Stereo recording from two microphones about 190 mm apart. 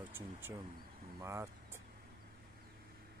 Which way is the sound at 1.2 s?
15° right (ahead or behind).